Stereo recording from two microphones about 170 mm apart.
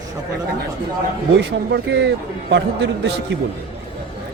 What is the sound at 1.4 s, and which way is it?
Speech, 90° right.